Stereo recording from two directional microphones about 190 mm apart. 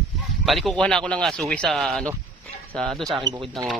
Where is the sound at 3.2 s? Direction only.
20° right (ahead or behind).